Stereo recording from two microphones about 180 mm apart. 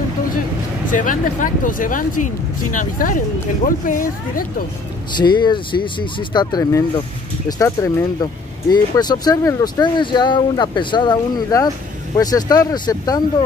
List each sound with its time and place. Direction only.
0.9 s speech: 45° left (ahead or behind)
5.1 s speech: 25° left (ahead or behind)